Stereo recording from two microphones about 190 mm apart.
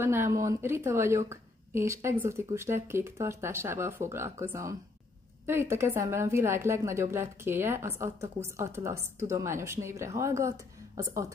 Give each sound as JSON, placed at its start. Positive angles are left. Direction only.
{"t": 0.0, "sound": "a woman's voice", "side_deg": -15}